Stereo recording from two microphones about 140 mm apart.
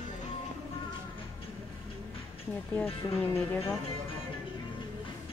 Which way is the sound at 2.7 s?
15° left (ahead or behind).